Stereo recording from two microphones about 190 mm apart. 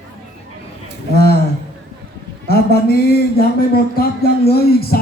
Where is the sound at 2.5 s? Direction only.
55° left (ahead or behind).